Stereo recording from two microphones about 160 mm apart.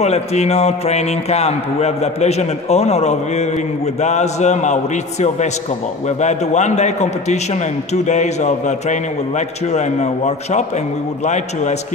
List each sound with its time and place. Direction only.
0.0 s a man's voice: 40° left (ahead or behind)
6.0 s a man's voice: 45° left (ahead or behind)